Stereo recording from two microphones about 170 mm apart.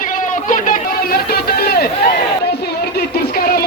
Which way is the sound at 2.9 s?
65° left (ahead or behind).